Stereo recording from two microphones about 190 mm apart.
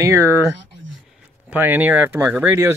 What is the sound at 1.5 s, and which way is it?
Speech, 10° right (ahead or behind).